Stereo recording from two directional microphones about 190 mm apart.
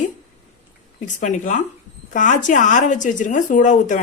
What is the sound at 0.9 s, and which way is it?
Speech, 40° left (ahead or behind).